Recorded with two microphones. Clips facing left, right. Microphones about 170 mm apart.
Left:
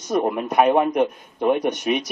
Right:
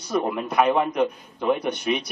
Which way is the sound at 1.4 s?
45° left (ahead or behind).